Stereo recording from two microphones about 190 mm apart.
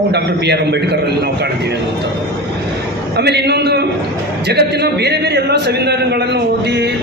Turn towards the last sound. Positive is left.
turn(degrees=-60)  # may be behind; listen again after turning